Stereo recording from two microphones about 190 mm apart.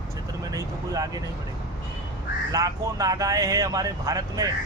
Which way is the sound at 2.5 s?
20° right (ahead or behind).